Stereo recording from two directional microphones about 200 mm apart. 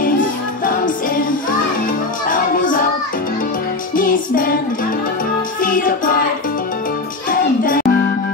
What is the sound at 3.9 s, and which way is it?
Music, 45° left (ahead or behind).